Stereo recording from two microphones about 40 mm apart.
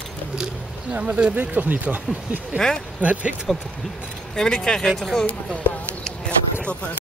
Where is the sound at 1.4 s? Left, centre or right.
Right.